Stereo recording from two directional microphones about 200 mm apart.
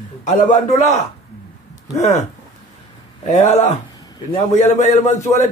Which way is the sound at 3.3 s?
35° left (ahead or behind).